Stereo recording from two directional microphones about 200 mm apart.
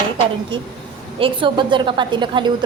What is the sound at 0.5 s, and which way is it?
A woman's voice, 25° right (ahead or behind).